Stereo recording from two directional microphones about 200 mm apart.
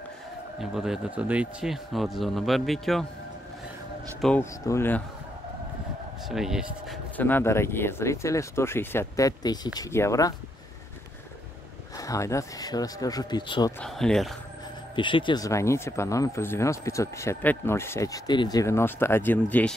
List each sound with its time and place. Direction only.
0.6 s speech: centre (ahead or behind)
4.2 s speech: 10° left (ahead or behind)
6.2 s speech: centre (ahead or behind)
7.2 s speech: 10° left (ahead or behind)
12.0 s speech: 15° left (ahead or behind)
13.7 s speech: centre (ahead or behind)
15.0 s speech: 25° left (ahead or behind); by 19.7 s 10° left (ahead or behind)